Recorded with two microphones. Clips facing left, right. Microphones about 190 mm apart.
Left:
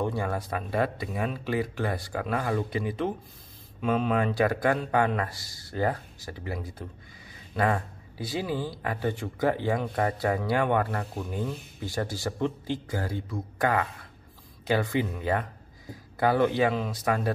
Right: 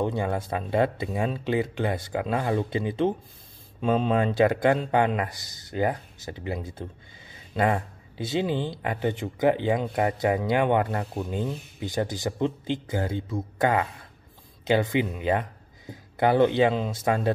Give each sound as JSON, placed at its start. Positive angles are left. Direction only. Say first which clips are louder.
{"t": 0.0, "sound": "speech", "louder": "right 3 dB", "side_deg": -20}